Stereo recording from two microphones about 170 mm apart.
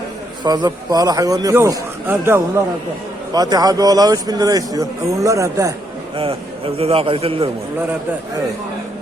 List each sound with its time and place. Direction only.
0.4 s a man's voice: 25° right (ahead or behind)
6.1 s a man's voice: 35° right (ahead or behind)